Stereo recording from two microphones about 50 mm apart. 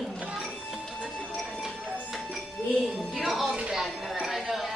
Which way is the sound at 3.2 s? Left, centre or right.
Centre.